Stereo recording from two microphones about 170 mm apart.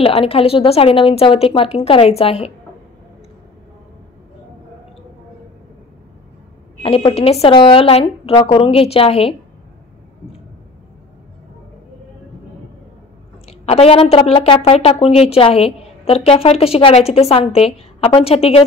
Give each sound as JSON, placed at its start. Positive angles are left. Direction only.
{"t": 0.0, "sound": "a woman's voice", "side_deg": 35}
{"t": 6.8, "sound": "a woman's voice", "side_deg": 35}
{"t": 13.5, "sound": "a woman's voice", "side_deg": 35}